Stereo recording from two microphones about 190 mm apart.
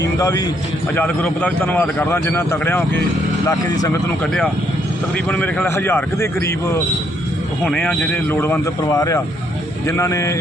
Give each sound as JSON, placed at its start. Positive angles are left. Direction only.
{"t": 0.0, "sound": "a sound", "side_deg": 20}
{"t": 0.9, "sound": "a man's voice", "side_deg": 5}
{"t": 5.1, "sound": "a man's voice", "side_deg": 5}
{"t": 7.6, "sound": "a man's voice", "side_deg": 5}